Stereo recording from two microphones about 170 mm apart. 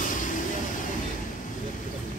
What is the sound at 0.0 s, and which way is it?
Vehicle, 50° left (ahead or behind).